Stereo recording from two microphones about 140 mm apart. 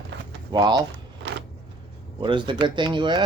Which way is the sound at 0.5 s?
30° right (ahead or behind).